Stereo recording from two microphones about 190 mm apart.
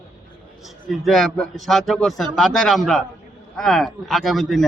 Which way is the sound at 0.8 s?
Centre (ahead or behind).